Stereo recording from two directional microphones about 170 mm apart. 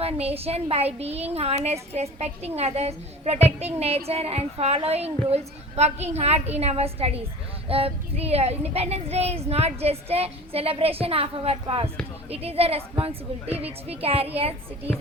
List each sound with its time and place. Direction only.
0.0 s child singing: 35° right (ahead or behind)